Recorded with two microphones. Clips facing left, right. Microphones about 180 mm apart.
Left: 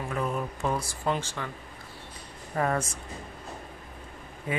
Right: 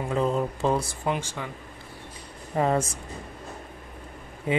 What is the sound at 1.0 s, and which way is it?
Speech, 15° right (ahead or behind).